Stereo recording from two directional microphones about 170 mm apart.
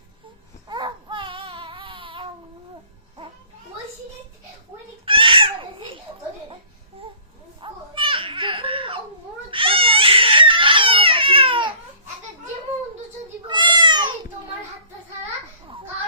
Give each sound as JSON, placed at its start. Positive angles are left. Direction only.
{"t": 0.7, "sound": "a sound", "side_deg": -25}
{"t": 5.0, "sound": "cat", "side_deg": -30}
{"t": 7.0, "sound": "babbling", "side_deg": -35}
{"t": 7.6, "sound": "baby cry", "side_deg": -30}
{"t": 9.5, "sound": "crying", "side_deg": -30}
{"t": 13.5, "sound": "cat", "side_deg": -25}